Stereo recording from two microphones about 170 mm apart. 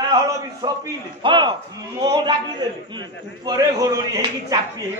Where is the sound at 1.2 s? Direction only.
30° right (ahead or behind).